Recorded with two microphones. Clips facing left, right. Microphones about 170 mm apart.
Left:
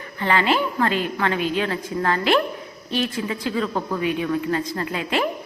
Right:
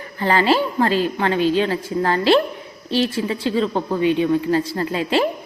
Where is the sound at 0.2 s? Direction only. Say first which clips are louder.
Right 3 dB; 35° right (ahead or behind).